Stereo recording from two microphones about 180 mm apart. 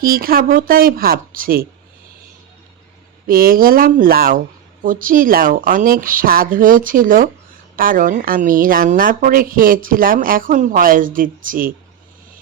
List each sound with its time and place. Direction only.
0.0 s a woman's voice: 55° right (ahead or behind)
3.2 s a woman's voice: 50° right (ahead or behind)